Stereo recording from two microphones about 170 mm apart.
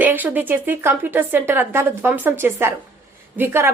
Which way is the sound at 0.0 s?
10° right (ahead or behind).